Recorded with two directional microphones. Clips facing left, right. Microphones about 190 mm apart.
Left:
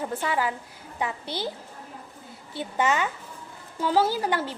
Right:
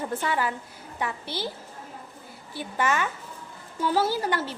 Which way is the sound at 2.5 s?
20° left (ahead or behind).